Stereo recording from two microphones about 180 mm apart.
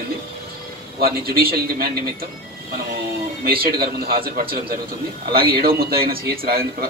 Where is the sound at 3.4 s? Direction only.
55° right (ahead or behind).